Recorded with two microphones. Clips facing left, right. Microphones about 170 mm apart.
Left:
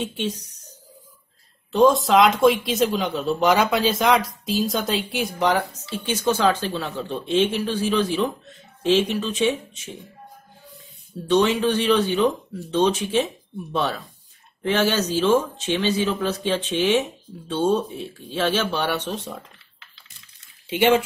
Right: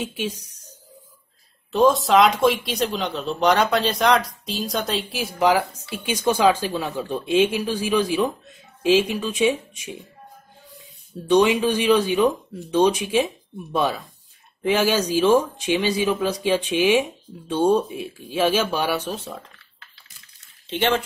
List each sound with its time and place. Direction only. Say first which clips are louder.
0.0 s a woman's voice: left 1 dB; 10° right (ahead or behind)
11.2 s a woman's voice: right 2 dB; 10° right (ahead or behind)
20.6 s speech: left 4 dB; 10° left (ahead or behind)